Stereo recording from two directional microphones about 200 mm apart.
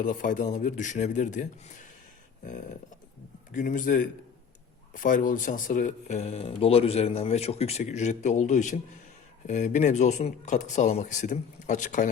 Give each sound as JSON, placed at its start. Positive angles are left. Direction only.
{"t": 0.0, "sound": "speech", "side_deg": 40}
{"t": 3.5, "sound": "speech", "side_deg": 40}